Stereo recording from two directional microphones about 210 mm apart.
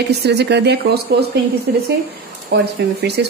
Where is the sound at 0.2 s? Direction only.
55° right (ahead or behind).